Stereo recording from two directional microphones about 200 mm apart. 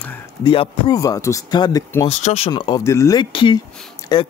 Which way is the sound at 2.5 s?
20° left (ahead or behind).